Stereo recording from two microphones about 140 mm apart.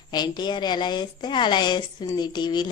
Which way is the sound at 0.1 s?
30° left (ahead or behind).